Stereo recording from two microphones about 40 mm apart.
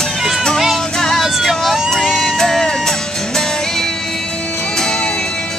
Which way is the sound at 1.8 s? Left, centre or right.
Centre.